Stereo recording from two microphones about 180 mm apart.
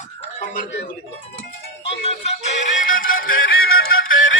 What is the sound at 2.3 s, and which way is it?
Music, 45° left (ahead or behind).